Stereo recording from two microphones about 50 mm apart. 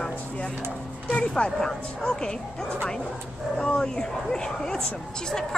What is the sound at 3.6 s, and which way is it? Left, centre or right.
Speech, centre.